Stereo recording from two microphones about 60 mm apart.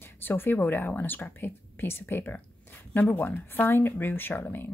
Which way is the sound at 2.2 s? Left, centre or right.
Left.